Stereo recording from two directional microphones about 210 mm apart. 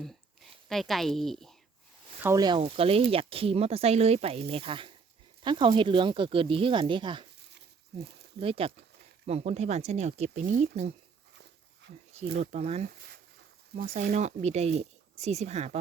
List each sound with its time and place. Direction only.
0.7 s a woman's voice: centre (ahead or behind)
2.2 s speech: 15° right (ahead or behind)
8.4 s speech: 25° right (ahead or behind)
11.8 s dog: 55° right (ahead or behind)
12.4 s speech: 30° right (ahead or behind)
14.2 s speech: 30° right (ahead or behind)